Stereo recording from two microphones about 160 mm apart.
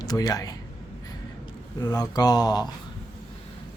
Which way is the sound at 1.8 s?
20° left (ahead or behind).